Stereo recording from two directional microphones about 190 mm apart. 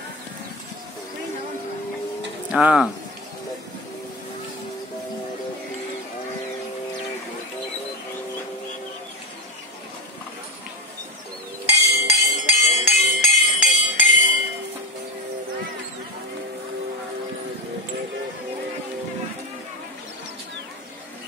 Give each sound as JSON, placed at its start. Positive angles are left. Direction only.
{"t": 2.5, "sound": "speech", "side_deg": -5}
{"t": 11.6, "sound": "music", "side_deg": 35}